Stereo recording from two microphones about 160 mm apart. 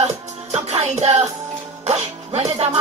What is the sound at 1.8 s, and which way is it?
Speech, 40° right (ahead or behind).